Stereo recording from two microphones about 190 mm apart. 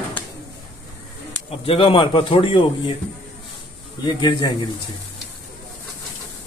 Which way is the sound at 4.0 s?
20° left (ahead or behind).